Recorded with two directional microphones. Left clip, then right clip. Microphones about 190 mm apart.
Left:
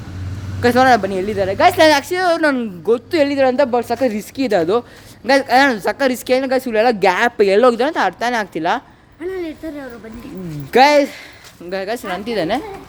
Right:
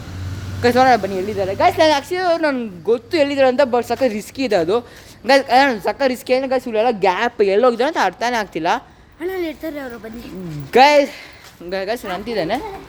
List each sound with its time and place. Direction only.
0.6 s a woman's voice: 15° left (ahead or behind)
5.2 s a woman's voice: 5° left (ahead or behind); by 7.8 s 25° left (ahead or behind)
7.8 s a woman's voice: 10° left (ahead or behind)
9.2 s speech: 55° right (ahead or behind)
10.7 s a woman's voice: 5° left (ahead or behind)